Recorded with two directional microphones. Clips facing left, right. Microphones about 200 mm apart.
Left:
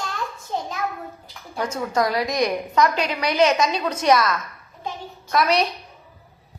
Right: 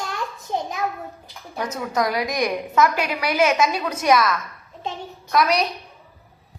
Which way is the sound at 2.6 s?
5° right (ahead or behind).